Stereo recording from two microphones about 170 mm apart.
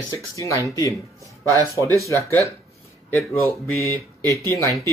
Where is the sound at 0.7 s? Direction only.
20° left (ahead or behind).